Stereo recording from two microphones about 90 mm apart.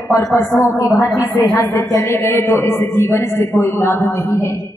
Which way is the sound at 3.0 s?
30° left (ahead or behind).